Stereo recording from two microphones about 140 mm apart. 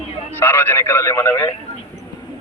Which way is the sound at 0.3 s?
15° left (ahead or behind).